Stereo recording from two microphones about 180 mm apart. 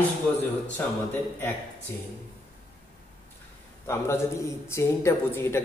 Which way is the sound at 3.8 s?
15° left (ahead or behind).